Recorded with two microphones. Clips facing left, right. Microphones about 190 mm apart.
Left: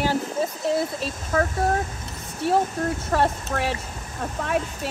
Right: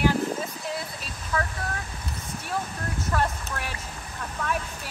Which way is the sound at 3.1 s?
25° left (ahead or behind).